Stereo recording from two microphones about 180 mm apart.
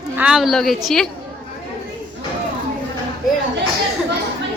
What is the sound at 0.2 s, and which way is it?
Speech, 5° right (ahead or behind).